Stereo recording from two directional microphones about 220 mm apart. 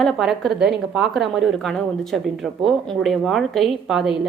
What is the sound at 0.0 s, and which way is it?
A woman's voice, centre (ahead or behind).